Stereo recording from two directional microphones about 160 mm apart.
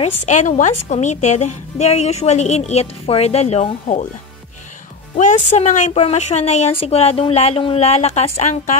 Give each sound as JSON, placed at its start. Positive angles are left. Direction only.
{"t": 0.0, "sound": "a woman's voice", "side_deg": 50}
{"t": 5.1, "sound": "a woman's voice", "side_deg": 55}